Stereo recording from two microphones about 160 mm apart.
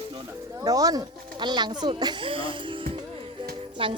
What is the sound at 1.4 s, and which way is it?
Speech, 25° right (ahead or behind).